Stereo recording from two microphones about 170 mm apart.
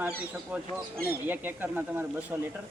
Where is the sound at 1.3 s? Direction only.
10° right (ahead or behind).